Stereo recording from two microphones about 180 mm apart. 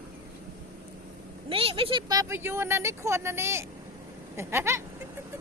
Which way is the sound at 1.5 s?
30° right (ahead or behind).